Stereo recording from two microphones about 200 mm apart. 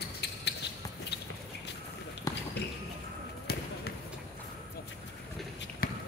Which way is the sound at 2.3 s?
15° left (ahead or behind).